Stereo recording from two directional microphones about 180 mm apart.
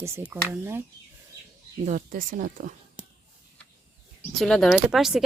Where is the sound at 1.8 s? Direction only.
50° right (ahead or behind).